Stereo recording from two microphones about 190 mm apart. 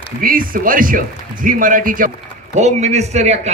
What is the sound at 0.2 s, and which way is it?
A man's voice, 50° right (ahead or behind).